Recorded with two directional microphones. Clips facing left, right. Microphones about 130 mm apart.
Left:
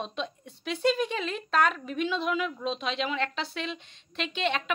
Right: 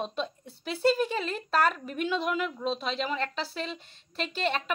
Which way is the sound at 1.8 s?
50° right (ahead or behind).